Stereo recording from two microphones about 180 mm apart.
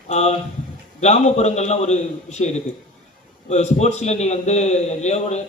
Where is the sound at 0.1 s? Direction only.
35° left (ahead or behind).